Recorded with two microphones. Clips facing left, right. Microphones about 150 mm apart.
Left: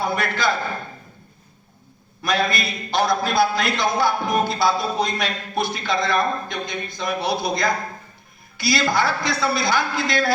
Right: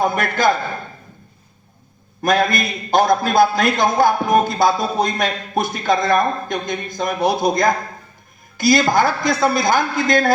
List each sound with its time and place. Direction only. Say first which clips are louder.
0.0 s a man's voice: right 5 dB; 50° right (ahead or behind)
2.2 s a man's voice: right 5 dB; 50° right (ahead or behind)